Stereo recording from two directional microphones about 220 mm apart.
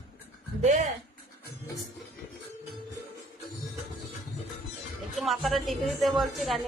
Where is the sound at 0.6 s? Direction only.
35° right (ahead or behind).